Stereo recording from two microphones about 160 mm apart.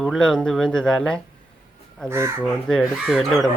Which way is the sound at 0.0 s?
5° left (ahead or behind).